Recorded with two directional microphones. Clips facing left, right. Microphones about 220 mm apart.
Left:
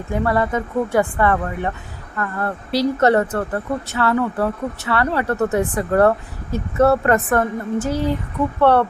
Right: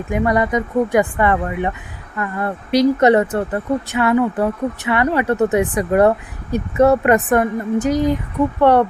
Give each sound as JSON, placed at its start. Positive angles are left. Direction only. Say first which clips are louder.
{"t": 0.1, "sound": "speech", "louder": "right 2 dB", "side_deg": -15}